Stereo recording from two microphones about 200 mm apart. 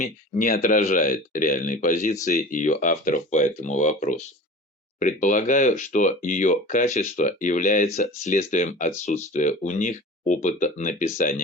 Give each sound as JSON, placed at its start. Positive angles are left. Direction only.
{"t": 0.0, "sound": "speech", "side_deg": 40}